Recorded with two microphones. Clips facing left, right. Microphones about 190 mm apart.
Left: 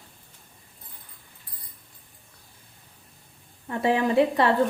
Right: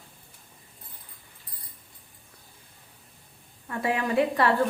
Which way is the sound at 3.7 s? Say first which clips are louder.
Left 4 dB; 25° left (ahead or behind).